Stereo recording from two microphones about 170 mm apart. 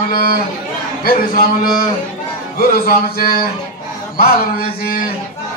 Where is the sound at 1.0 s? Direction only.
60° left (ahead or behind).